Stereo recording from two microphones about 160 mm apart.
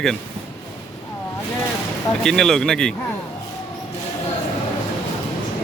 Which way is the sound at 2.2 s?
5° left (ahead or behind).